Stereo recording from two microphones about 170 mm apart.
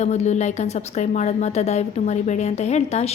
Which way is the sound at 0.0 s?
40° left (ahead or behind).